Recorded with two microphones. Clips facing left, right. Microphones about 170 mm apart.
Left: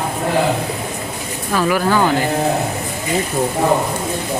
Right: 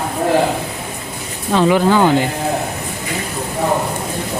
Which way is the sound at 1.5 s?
20° right (ahead or behind).